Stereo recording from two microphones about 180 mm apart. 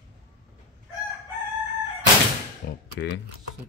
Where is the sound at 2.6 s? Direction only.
60° left (ahead or behind).